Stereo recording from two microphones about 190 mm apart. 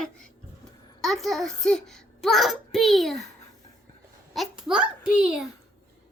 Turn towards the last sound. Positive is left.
turn(degrees=-5)  # may be behind; listen again after turning